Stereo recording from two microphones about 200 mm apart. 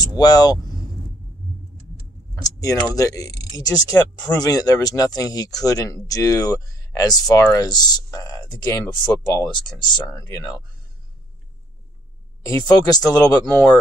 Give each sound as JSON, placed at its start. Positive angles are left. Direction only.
{"t": 0.0, "sound": "speech", "side_deg": 20}
{"t": 2.4, "sound": "speech", "side_deg": 15}
{"t": 9.8, "sound": "speech", "side_deg": 20}
{"t": 12.4, "sound": "speech", "side_deg": 20}